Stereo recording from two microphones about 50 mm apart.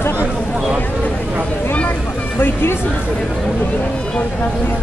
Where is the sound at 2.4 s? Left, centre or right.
Left.